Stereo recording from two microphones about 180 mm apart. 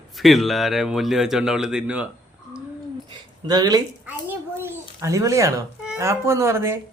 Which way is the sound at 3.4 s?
20° right (ahead or behind).